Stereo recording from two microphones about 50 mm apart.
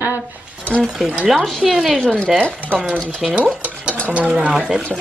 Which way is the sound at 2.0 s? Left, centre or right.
Centre.